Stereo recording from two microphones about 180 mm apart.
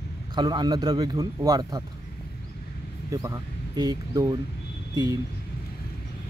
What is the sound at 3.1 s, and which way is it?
Speech, 20° right (ahead or behind).